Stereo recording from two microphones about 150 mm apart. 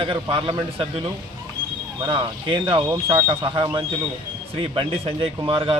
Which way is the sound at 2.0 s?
35° right (ahead or behind).